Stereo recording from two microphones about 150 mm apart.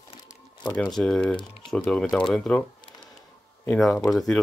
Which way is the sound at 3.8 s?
5° left (ahead or behind).